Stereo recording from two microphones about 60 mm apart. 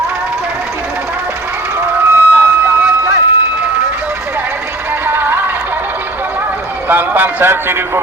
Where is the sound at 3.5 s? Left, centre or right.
Right.